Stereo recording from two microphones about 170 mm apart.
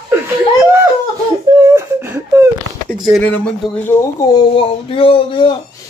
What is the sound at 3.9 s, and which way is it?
Speech, 15° left (ahead or behind).